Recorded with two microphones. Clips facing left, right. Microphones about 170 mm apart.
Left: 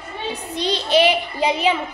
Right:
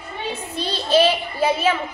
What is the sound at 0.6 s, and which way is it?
A child's voice, 15° left (ahead or behind).